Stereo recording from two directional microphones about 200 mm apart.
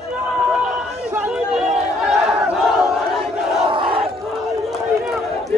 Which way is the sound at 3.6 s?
25° right (ahead or behind).